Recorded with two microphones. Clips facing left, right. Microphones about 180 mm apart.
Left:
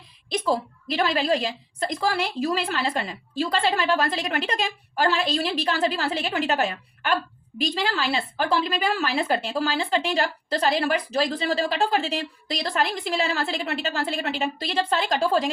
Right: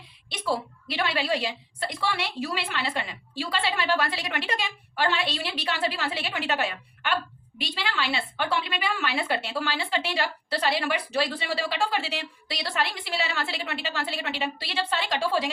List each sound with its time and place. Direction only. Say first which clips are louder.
0.3 s a woman's voice: left 5 dB; 40° left (ahead or behind)